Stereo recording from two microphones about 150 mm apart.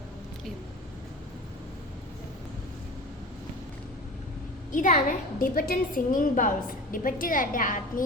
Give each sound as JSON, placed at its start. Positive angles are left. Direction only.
{"t": 4.7, "sound": "a woman's voice", "side_deg": 65}